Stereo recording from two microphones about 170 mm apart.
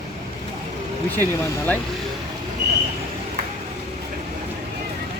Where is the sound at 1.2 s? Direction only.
10° left (ahead or behind).